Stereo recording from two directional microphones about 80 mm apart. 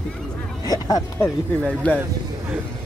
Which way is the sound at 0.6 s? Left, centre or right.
Left.